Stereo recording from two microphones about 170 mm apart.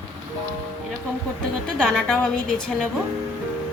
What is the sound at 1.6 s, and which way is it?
Speech, 5° left (ahead or behind).